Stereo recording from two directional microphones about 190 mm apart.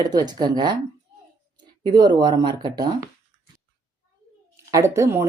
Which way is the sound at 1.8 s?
25° right (ahead or behind).